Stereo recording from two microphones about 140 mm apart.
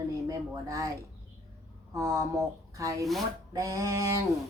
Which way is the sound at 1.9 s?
25° right (ahead or behind).